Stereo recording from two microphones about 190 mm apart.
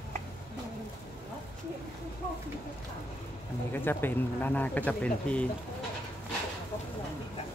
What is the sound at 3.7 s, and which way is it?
Speech, 10° left (ahead or behind).